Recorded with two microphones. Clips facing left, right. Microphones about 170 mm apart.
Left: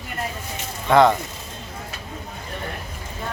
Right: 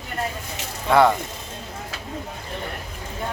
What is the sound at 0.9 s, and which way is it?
Speech, 5° right (ahead or behind).